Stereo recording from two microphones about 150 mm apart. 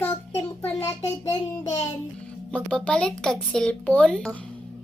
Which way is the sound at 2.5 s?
5° left (ahead or behind).